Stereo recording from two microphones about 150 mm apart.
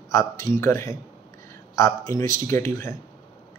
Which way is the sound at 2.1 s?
60° right (ahead or behind).